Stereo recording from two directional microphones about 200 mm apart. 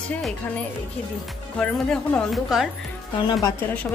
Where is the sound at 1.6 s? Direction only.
5° left (ahead or behind).